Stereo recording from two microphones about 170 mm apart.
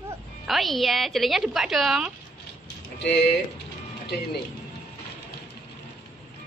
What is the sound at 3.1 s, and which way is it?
Speech, 90° left.